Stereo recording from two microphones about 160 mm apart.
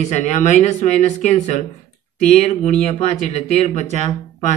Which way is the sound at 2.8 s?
45° left (ahead or behind).